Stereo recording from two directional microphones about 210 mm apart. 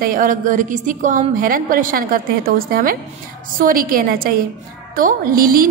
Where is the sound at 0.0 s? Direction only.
40° right (ahead or behind).